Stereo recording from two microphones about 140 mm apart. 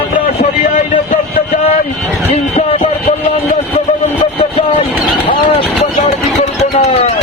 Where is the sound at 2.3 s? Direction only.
45° left (ahead or behind).